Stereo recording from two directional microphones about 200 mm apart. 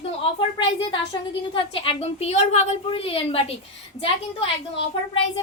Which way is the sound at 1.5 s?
25° left (ahead or behind).